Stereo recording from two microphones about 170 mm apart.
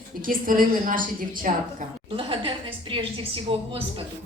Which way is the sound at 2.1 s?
30° right (ahead or behind).